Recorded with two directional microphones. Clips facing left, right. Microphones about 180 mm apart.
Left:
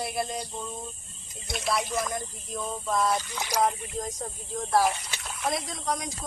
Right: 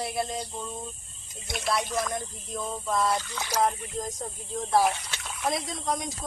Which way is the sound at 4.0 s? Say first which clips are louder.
Even; centre (ahead or behind).